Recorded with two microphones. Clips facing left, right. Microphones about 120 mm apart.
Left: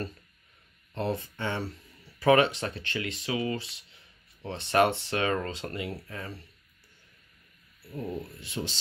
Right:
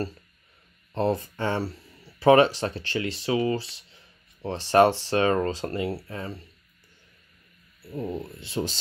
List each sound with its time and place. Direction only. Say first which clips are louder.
0.9 s speech: right 6 dB; 35° right (ahead or behind)
7.9 s speech: right 4 dB; 25° right (ahead or behind)